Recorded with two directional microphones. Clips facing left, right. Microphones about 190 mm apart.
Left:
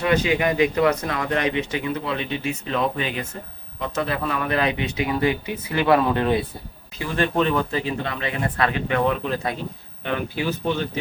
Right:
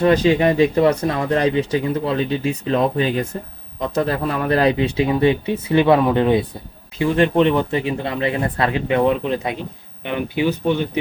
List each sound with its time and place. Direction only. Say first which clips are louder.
0.0 s speech: right 6 dB; 35° right (ahead or behind); by 10.8 s 15° right (ahead or behind)